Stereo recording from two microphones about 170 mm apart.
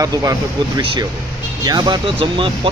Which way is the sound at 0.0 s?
20° right (ahead or behind).